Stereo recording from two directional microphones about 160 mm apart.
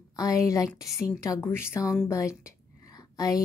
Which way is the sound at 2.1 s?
20° left (ahead or behind).